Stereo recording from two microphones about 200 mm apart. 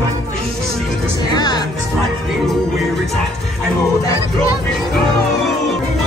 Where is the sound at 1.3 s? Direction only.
20° left (ahead or behind).